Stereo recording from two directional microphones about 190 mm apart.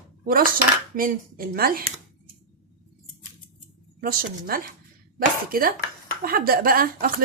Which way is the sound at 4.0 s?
50° right (ahead or behind).